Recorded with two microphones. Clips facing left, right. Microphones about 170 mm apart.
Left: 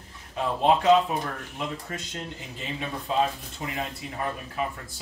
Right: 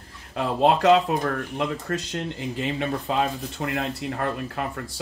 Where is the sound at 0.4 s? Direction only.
70° right (ahead or behind).